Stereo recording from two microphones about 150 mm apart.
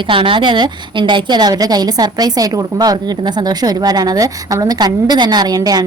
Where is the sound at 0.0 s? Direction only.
35° right (ahead or behind).